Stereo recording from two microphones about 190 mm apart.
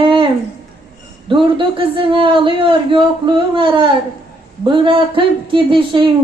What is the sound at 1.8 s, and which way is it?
Speech, 25° right (ahead or behind).